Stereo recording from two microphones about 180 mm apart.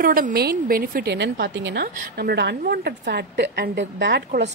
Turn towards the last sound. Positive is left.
turn(degrees=-75)  # may be behind; listen again after turning